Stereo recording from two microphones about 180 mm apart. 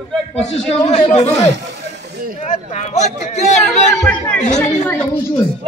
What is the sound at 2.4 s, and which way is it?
Speech, 40° left (ahead or behind).